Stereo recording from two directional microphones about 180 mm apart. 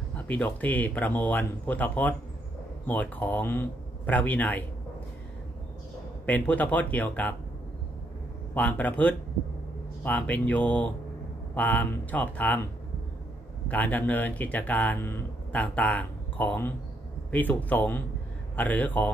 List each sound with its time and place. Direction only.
0.1 s speech: 10° left (ahead or behind)
6.2 s speech: 10° left (ahead or behind)
8.5 s speech: 10° left (ahead or behind)
13.7 s speech: 10° left (ahead or behind)